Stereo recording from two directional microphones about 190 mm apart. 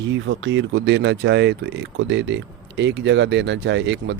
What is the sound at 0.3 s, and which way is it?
Speech, 75° right (ahead or behind).